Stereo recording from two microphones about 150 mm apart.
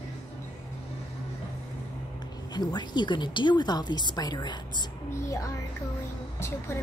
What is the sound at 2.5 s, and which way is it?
A woman's voice, 30° left (ahead or behind).